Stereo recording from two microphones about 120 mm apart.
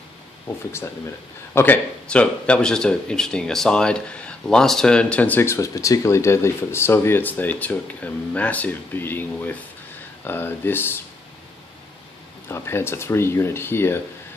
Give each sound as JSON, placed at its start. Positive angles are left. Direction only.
{"t": 0.7, "sound": "speech", "side_deg": 20}
{"t": 12.4, "sound": "speech", "side_deg": 20}